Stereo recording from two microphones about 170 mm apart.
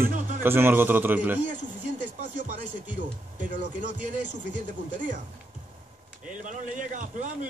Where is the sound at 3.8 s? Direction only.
90° left.